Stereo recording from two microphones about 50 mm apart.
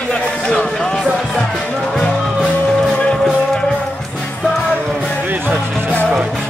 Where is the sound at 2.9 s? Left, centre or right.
Left.